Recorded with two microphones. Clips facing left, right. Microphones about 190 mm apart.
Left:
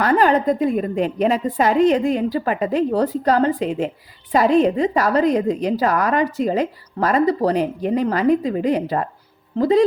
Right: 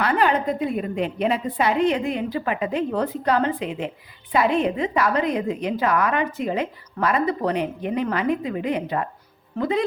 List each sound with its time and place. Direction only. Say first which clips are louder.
0.0 s a woman's voice: left 5 dB; 40° left (ahead or behind)